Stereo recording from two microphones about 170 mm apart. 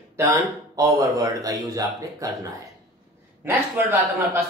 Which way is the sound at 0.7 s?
20° right (ahead or behind).